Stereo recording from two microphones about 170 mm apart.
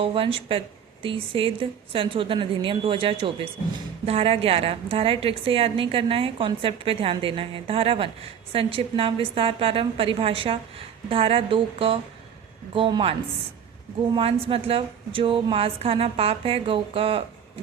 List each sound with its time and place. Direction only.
0.0 s a woman's voice: 30° right (ahead or behind)
14.2 s a woman's voice: 35° right (ahead or behind)